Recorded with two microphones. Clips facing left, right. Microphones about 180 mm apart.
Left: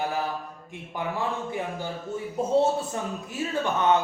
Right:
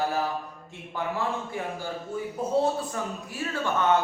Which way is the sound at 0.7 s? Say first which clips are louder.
Left 3 dB; 15° left (ahead or behind).